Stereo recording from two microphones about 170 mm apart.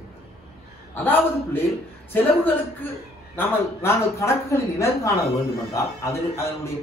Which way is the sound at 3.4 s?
15° left (ahead or behind).